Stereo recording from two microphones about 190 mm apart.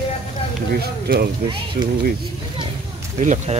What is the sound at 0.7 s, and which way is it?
Speech, 55° right (ahead or behind).